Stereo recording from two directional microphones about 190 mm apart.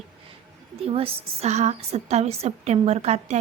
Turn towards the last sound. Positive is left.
turn(degrees=-35)  # may be behind; listen again after turning